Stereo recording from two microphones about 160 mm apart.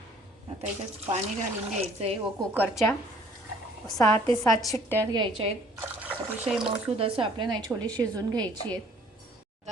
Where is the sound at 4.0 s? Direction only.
15° left (ahead or behind).